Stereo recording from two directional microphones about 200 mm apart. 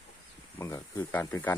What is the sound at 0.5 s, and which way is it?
Speech, 15° left (ahead or behind).